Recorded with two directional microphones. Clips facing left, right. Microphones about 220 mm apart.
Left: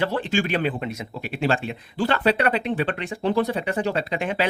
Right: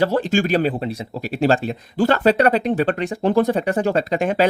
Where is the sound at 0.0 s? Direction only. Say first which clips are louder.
Right 5 dB; 40° right (ahead or behind).